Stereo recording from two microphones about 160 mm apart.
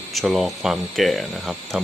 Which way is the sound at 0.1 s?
Centre (ahead or behind).